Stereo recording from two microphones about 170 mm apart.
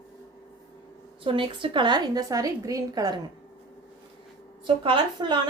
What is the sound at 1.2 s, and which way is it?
A woman's voice, 30° right (ahead or behind).